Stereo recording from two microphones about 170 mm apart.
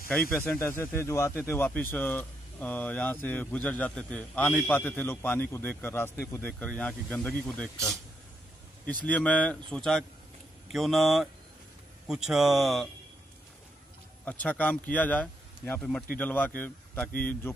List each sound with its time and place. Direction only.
0.1 s speech: 10° left (ahead or behind)
9.0 s speech: 5° left (ahead or behind)
14.2 s speech: 10° left (ahead or behind)
17.1 s a man's voice: 60° left (ahead or behind)